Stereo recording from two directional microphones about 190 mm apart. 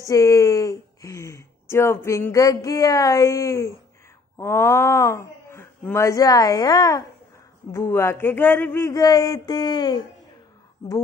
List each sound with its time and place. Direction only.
0.0 s speech: 15° left (ahead or behind)